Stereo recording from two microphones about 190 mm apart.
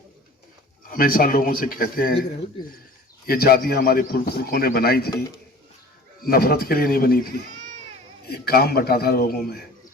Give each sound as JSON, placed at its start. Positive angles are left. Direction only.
{"t": 0.9, "sound": "a man's voice", "side_deg": 50}
{"t": 3.2, "sound": "a man's voice", "side_deg": 55}
{"t": 6.2, "sound": "a man's voice", "side_deg": 55}